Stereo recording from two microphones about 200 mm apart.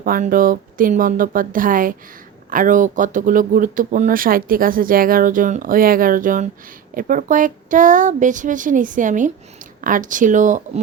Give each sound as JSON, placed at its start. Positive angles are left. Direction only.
{"t": 0.0, "sound": "speech", "side_deg": -45}